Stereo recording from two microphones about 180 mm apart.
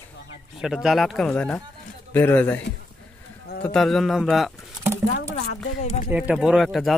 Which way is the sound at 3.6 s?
Centre (ahead or behind).